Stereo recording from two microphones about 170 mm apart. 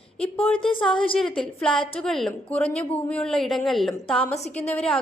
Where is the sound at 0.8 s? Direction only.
5° left (ahead or behind).